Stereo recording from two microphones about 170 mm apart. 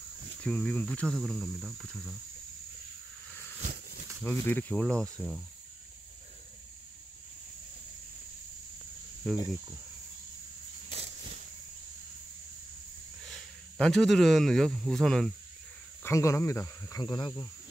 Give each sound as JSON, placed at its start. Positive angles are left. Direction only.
{"t": 0.4, "sound": "speech", "side_deg": 5}
{"t": 3.6, "sound": "a sound", "side_deg": -55}
{"t": 4.2, "sound": "speech", "side_deg": 10}
{"t": 9.3, "sound": "speech", "side_deg": 0}
{"t": 10.9, "sound": "cricket", "side_deg": -40}
{"t": 13.2, "sound": "speech", "side_deg": 0}
{"t": 16.0, "sound": "speech", "side_deg": 15}